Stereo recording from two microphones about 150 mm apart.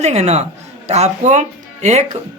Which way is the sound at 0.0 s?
50° right (ahead or behind).